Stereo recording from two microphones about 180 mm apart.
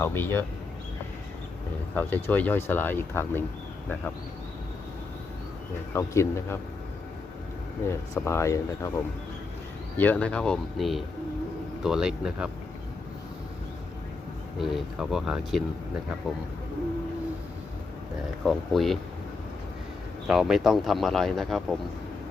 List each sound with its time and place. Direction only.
0.0 s speech: 15° left (ahead or behind)
2.0 s speech: 10° left (ahead or behind)
5.9 s speech: 15° left (ahead or behind)
7.9 s speech: 15° left (ahead or behind)
10.0 s speech: 10° left (ahead or behind)
14.6 s speech: centre (ahead or behind)
18.4 s speech: centre (ahead or behind)
20.2 s speech: centre (ahead or behind)